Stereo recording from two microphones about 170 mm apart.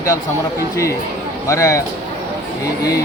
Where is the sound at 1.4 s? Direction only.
15° left (ahead or behind).